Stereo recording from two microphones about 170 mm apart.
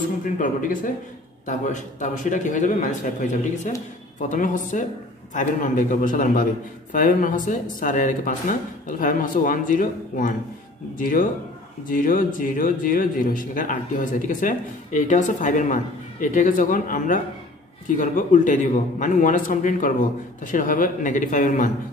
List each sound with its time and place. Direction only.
0.2 s speech: 50° left (ahead or behind)